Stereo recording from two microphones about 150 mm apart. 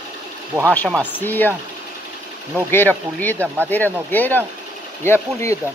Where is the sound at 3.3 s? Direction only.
15° right (ahead or behind).